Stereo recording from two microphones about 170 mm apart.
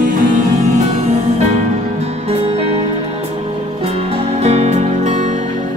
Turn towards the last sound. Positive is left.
turn(degrees=-40)  # may be behind; listen again after turning